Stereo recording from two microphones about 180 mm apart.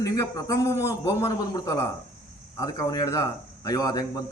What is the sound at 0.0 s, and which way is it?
A man's voice, 20° left (ahead or behind).